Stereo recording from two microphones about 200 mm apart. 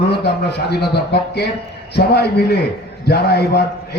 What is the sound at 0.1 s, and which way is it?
A man's voice, 55° left (ahead or behind).